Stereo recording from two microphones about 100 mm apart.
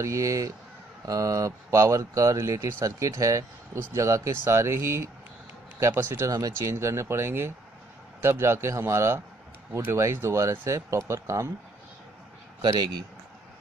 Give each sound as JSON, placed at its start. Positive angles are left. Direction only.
{"t": 0.0, "sound": "speech", "side_deg": -30}
{"t": 12.6, "sound": "speech", "side_deg": -40}